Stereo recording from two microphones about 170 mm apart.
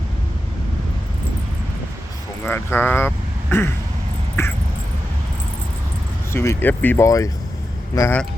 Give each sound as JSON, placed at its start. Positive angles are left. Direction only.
{"t": 2.4, "sound": "speech", "side_deg": 10}
{"t": 6.3, "sound": "speech", "side_deg": 15}